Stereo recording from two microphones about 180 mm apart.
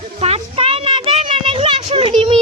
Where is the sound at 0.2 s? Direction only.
35° right (ahead or behind).